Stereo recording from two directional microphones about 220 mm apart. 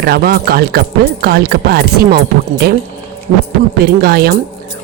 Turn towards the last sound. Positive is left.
turn(degrees=-45)  # may be behind; listen again after turning